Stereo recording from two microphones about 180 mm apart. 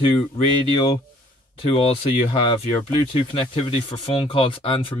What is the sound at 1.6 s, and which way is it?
Speech, 30° left (ahead or behind).